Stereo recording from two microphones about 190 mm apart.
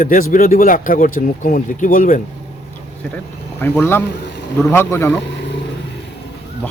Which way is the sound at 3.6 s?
10° left (ahead or behind).